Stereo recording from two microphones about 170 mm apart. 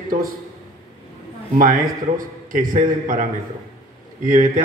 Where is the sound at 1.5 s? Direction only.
55° right (ahead or behind).